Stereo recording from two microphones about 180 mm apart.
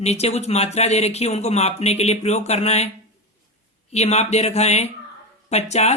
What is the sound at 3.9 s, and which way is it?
Speech, 40° left (ahead or behind).